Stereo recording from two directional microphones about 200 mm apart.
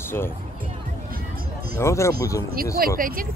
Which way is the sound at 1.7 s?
15° left (ahead or behind).